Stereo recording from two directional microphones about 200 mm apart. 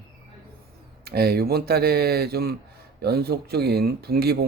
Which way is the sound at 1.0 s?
50° right (ahead or behind).